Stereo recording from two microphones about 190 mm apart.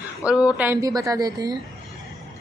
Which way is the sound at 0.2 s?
5° right (ahead or behind).